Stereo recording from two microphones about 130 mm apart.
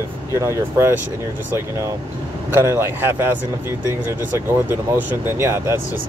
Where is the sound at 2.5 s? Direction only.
20° right (ahead or behind).